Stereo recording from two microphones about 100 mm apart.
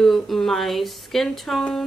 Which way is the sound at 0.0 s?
Centre (ahead or behind).